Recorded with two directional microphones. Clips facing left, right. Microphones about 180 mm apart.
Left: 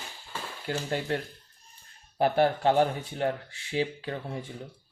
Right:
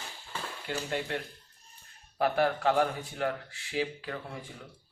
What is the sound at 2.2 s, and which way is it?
Speech, 30° left (ahead or behind).